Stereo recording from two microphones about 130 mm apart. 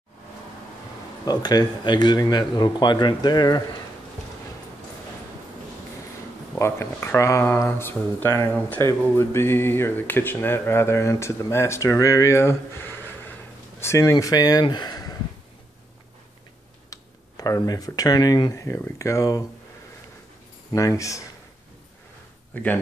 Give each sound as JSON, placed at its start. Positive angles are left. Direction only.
{"t": 1.2, "sound": "speech", "side_deg": 30}
{"t": 6.6, "sound": "speech", "side_deg": 20}
{"t": 16.9, "sound": "speech", "side_deg": 30}
{"t": 20.7, "sound": "speech", "side_deg": 25}
{"t": 22.5, "sound": "speech", "side_deg": 10}